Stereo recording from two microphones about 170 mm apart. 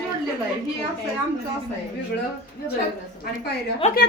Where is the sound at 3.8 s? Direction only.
40° left (ahead or behind).